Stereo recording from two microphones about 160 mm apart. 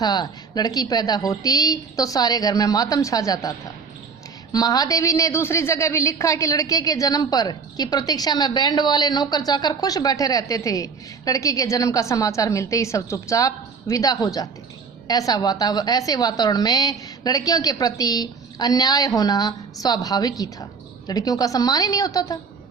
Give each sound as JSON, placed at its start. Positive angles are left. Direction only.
{"t": 0.0, "sound": "a woman's voice", "side_deg": 25}
{"t": 4.5, "sound": "a woman's voice", "side_deg": 25}